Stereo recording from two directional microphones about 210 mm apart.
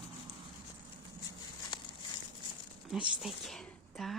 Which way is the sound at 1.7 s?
20° left (ahead or behind).